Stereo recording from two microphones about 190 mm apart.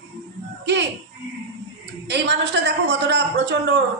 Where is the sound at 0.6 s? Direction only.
65° right (ahead or behind).